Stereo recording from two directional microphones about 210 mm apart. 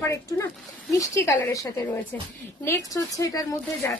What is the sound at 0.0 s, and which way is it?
Speech, 15° left (ahead or behind).